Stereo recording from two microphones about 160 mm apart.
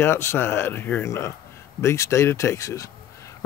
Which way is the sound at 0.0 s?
15° left (ahead or behind).